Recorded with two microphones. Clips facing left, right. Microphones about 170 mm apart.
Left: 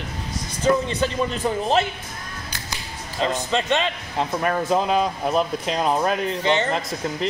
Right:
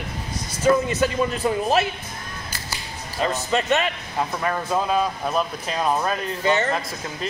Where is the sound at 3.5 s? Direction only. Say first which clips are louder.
Right 3 dB; 5° right (ahead or behind).